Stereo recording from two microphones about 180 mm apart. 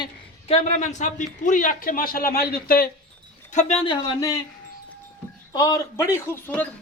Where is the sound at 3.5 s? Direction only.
35° left (ahead or behind).